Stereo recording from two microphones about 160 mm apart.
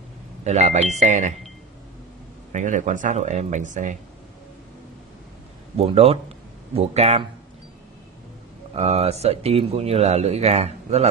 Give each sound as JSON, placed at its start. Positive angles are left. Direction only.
{"t": 0.4, "sound": "speech", "side_deg": -45}
{"t": 2.5, "sound": "speech", "side_deg": -50}
{"t": 5.8, "sound": "speech", "side_deg": -40}
{"t": 8.7, "sound": "speech", "side_deg": -40}